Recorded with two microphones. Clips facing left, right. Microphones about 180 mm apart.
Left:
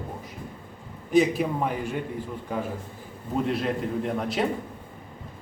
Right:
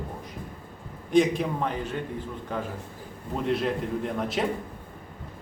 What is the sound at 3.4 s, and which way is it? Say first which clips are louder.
Speech: right 3 dB; centre (ahead or behind).